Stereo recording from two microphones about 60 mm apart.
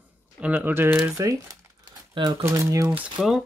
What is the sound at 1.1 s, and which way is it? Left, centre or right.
Speech, right.